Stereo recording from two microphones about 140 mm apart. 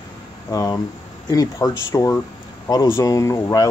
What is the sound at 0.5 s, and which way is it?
Speech, 25° left (ahead or behind).